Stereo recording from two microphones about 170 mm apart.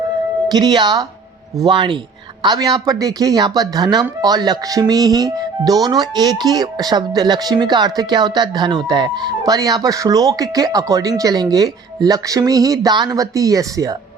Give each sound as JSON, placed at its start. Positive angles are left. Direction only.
{"t": 0.5, "sound": "speech", "side_deg": -25}